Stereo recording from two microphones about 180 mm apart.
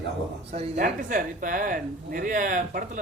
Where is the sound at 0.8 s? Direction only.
50° right (ahead or behind).